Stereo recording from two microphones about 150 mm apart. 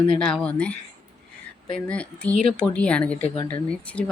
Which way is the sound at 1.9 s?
10° left (ahead or behind).